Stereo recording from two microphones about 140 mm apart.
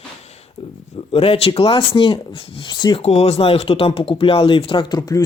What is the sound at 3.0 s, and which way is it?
Speech, 45° left (ahead or behind).